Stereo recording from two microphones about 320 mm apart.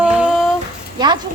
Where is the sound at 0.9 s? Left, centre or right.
Centre.